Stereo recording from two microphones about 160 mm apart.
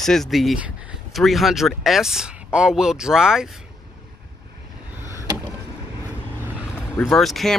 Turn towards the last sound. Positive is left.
turn(degrees=0)  # may be behind; listen again after turning